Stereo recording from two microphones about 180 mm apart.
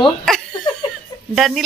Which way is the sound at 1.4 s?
Centre (ahead or behind).